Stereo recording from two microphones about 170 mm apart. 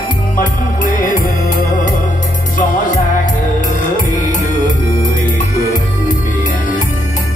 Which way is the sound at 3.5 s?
50° left (ahead or behind).